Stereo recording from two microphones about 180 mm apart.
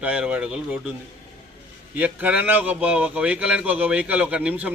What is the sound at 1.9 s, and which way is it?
A man's voice, 10° right (ahead or behind).